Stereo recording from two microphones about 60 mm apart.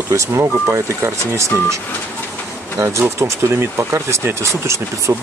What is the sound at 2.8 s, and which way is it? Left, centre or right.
Speech, right.